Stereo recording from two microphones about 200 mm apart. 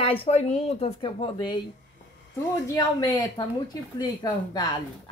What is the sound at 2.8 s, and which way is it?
A woman's voice, 20° left (ahead or behind).